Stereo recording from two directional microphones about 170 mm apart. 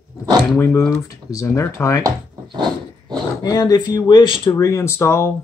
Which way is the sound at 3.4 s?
25° left (ahead or behind).